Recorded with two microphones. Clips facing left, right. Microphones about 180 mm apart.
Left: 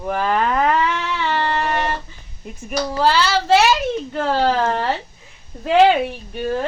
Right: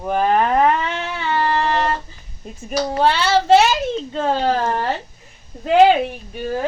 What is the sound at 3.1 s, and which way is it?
Speech, 55° right (ahead or behind).